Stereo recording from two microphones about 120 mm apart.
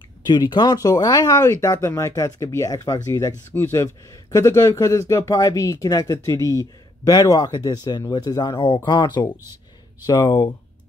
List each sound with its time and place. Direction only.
0.3 s speech: 35° left (ahead or behind)